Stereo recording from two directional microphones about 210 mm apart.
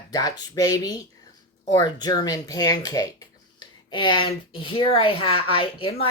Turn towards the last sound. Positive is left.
turn(degrees=25)  # may be behind; listen again after turning